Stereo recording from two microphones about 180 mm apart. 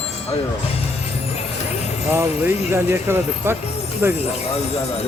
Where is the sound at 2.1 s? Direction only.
10° right (ahead or behind).